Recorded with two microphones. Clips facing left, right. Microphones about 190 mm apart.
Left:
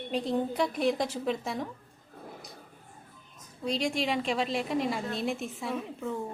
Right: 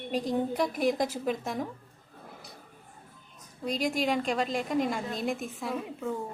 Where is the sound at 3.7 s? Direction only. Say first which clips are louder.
Right 2 dB; centre (ahead or behind).